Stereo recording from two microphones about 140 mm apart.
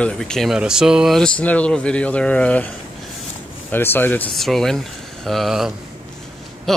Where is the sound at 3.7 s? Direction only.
15° left (ahead or behind).